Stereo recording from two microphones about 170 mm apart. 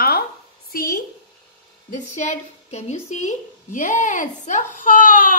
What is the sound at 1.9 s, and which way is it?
A woman's voice, 45° left (ahead or behind).